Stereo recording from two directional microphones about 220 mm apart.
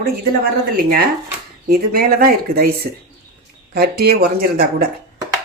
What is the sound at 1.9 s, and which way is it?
Speech, 40° right (ahead or behind).